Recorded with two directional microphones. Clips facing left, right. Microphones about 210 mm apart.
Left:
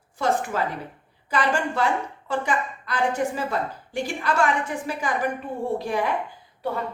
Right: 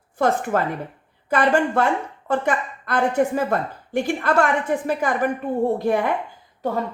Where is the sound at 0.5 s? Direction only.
55° right (ahead or behind).